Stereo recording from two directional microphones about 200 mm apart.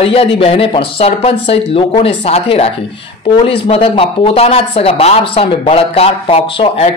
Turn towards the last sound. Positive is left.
turn(degrees=30)  # may be behind; listen again after turning